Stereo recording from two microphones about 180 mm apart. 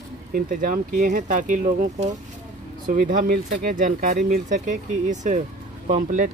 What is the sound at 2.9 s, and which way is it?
Speech, 50° right (ahead or behind).